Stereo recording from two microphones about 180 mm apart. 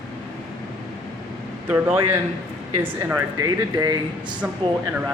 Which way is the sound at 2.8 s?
10° right (ahead or behind).